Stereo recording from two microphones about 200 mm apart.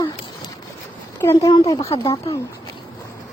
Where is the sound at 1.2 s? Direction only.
15° left (ahead or behind).